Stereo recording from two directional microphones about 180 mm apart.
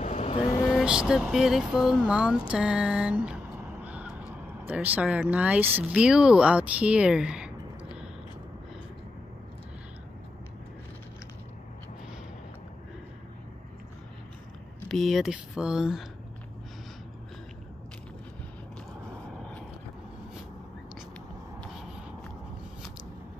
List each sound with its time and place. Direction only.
0.0 s vehicle: 35° left (ahead or behind)
0.7 s speech: 5° right (ahead or behind)
14.9 s speech: centre (ahead or behind)
21.5 s a sound: centre (ahead or behind)